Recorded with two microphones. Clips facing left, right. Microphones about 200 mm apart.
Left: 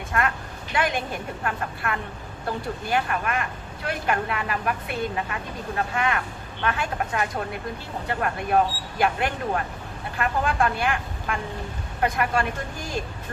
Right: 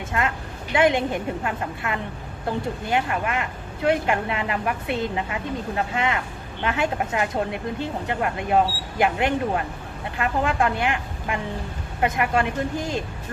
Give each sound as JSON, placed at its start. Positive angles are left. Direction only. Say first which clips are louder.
{"t": 0.1, "sound": "speech", "louder": "even", "side_deg": -20}